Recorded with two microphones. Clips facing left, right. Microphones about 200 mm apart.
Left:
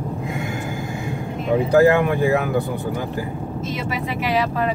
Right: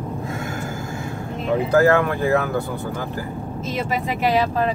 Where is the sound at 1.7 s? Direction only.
15° left (ahead or behind).